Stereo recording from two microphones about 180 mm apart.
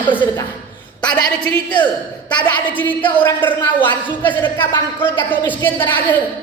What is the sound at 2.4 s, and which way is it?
A man's voice, 10° left (ahead or behind).